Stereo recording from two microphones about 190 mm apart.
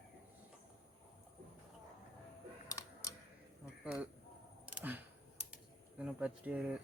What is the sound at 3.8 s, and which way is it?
Speech, 5° right (ahead or behind).